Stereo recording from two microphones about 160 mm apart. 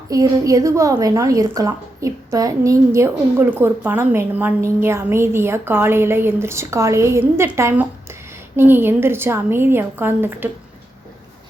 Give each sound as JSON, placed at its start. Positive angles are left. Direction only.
{"t": 0.1, "sound": "a woman's voice", "side_deg": -20}